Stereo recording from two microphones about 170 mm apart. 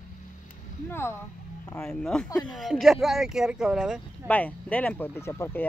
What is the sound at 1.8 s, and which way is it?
Speech, 5° left (ahead or behind).